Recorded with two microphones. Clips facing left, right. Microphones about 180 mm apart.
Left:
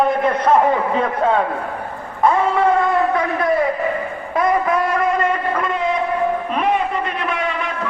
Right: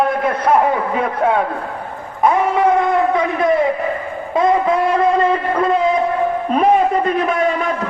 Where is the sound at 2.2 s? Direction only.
15° right (ahead or behind).